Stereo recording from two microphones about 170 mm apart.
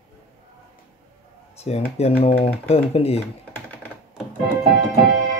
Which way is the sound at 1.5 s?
40° left (ahead or behind).